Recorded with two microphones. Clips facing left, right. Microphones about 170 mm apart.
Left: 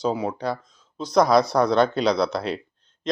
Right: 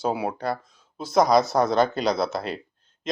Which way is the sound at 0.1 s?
10° right (ahead or behind).